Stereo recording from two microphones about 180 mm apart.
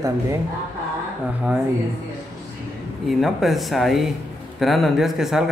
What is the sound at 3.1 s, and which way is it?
Speech, centre (ahead or behind).